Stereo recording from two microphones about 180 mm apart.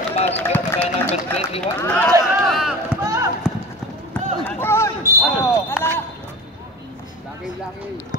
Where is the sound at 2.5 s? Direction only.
Centre (ahead or behind).